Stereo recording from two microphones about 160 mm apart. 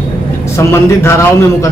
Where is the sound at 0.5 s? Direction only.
15° left (ahead or behind).